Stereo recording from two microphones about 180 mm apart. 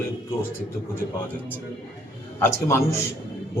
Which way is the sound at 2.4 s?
15° left (ahead or behind).